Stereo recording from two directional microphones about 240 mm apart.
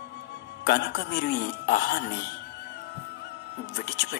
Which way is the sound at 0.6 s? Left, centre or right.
Left.